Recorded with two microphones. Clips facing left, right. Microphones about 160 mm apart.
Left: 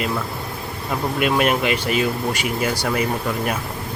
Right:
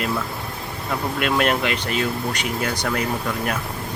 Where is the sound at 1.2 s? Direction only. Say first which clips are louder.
Left 2 dB; 10° left (ahead or behind).